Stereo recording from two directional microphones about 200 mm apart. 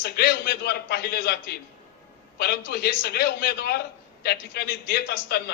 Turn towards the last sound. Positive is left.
turn(degrees=55)  # may be behind; listen again after turning